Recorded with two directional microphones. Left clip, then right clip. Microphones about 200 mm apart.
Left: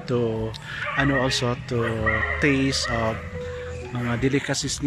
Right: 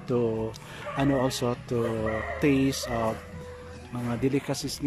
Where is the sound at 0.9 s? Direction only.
15° right (ahead or behind).